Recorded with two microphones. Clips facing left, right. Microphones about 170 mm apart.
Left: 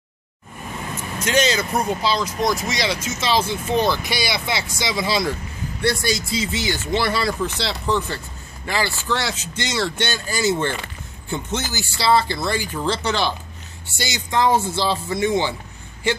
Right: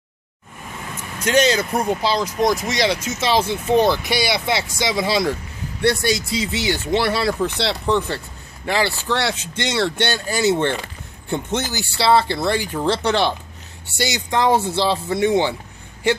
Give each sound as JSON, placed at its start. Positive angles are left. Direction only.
{"t": 1.2, "sound": "speech", "side_deg": -55}